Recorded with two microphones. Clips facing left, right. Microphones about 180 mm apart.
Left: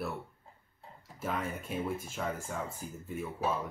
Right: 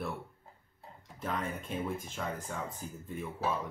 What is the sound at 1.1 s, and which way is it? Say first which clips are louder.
Speech: left 1 dB; 10° left (ahead or behind).